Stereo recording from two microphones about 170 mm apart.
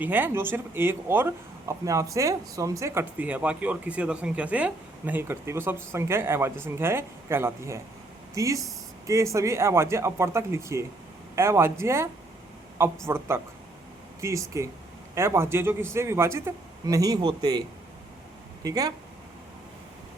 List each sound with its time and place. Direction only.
0.0 s a man's voice: 10° right (ahead or behind)
13.1 s a man's voice: 15° right (ahead or behind)
18.6 s a man's voice: 20° right (ahead or behind)